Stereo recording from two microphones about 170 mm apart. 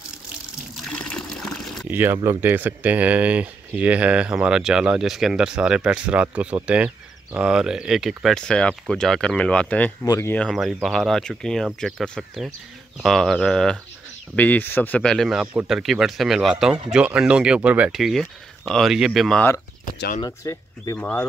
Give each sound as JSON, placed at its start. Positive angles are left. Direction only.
{"t": 0.8, "sound": "water", "side_deg": 5}
{"t": 1.9, "sound": "speech", "side_deg": -10}
{"t": 10.0, "sound": "speech", "side_deg": 20}
{"t": 10.3, "sound": "speech", "side_deg": 5}
{"t": 20.2, "sound": "speech", "side_deg": 20}